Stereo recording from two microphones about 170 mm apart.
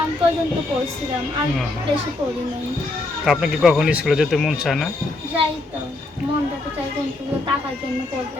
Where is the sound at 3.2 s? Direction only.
Centre (ahead or behind).